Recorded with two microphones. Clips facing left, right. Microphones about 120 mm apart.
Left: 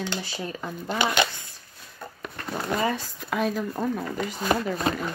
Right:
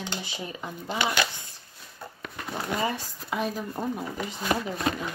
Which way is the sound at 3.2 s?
70° left (ahead or behind).